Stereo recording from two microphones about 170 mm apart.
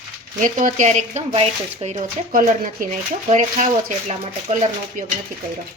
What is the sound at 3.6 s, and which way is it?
Speech, 50° right (ahead or behind).